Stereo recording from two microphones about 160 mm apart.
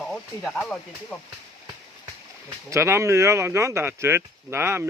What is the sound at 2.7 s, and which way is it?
Speech, 15° right (ahead or behind).